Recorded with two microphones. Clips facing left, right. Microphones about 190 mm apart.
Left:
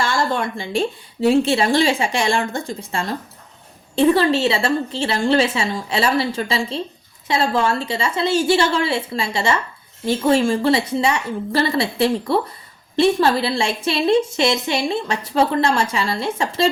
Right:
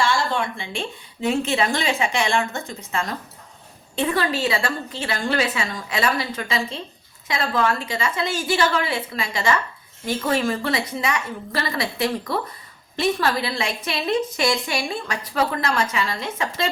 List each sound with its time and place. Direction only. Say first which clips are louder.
0.0 s a woman's voice: left 2 dB; 40° left (ahead or behind)